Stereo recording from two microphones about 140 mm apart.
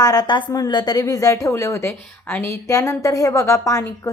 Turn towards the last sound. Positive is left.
turn(degrees=20)  # may be behind; listen again after turning